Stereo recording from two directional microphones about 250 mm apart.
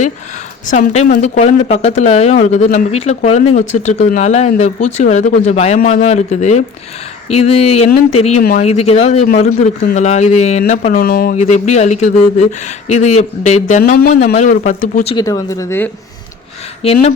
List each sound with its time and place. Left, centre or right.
0.7 s speech: left
9.2 s speech: left
15.1 s speech: centre
16.8 s speech: left